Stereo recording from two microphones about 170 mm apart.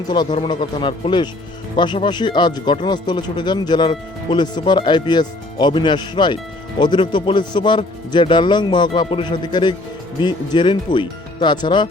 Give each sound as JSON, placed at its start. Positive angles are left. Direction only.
{"t": 0.1, "sound": "speech", "side_deg": 25}